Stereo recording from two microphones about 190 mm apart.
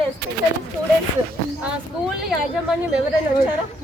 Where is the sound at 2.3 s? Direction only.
5° right (ahead or behind).